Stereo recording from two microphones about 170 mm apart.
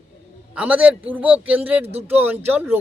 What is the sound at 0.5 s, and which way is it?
Speech, 5° right (ahead or behind).